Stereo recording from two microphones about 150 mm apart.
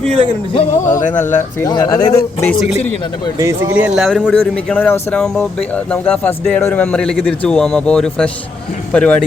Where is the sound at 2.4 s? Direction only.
5° left (ahead or behind).